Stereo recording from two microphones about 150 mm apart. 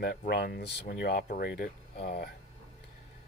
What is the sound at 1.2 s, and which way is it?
Speech, 70° left (ahead or behind).